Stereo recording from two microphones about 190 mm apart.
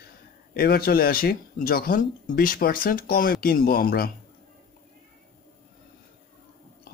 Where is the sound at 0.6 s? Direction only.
55° left (ahead or behind).